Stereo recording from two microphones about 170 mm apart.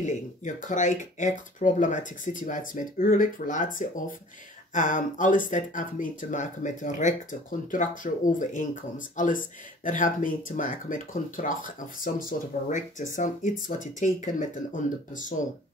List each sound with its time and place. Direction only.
0.0 s speech: 45° left (ahead or behind)